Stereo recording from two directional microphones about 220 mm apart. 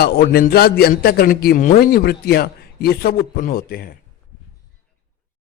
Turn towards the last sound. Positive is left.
turn(degrees=45)  # may be behind; listen again after turning